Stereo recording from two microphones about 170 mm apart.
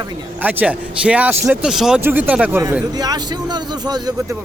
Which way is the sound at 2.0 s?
10° right (ahead or behind).